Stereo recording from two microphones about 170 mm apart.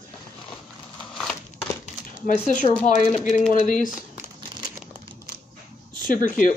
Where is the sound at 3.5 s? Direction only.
50° left (ahead or behind).